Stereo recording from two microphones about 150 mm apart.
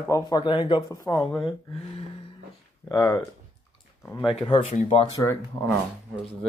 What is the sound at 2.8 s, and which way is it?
Speech, 20° left (ahead or behind).